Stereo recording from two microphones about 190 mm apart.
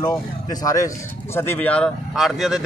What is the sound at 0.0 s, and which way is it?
A man's voice, 20° left (ahead or behind).